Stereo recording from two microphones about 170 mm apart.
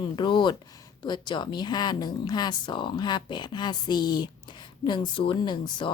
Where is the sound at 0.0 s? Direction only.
25° left (ahead or behind).